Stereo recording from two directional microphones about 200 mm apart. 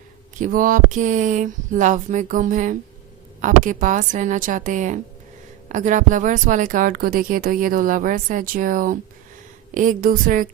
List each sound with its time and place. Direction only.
0.3 s speech: 40° right (ahead or behind)